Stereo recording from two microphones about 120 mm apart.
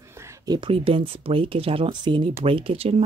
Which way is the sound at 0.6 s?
50° right (ahead or behind).